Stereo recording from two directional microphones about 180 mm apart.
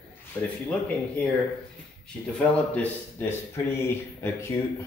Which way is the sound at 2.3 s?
10° left (ahead or behind).